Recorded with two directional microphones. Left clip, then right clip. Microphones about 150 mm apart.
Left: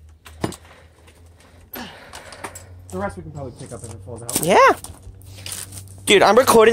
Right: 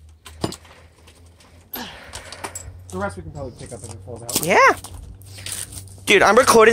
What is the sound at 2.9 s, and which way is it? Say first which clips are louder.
Speech: even; 35° left (ahead or behind).